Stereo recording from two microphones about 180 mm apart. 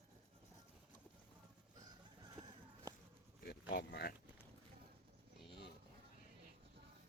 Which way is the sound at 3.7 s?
65° left (ahead or behind).